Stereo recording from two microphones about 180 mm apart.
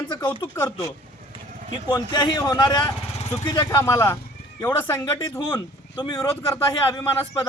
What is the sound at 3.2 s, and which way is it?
Vehicle, 35° left (ahead or behind).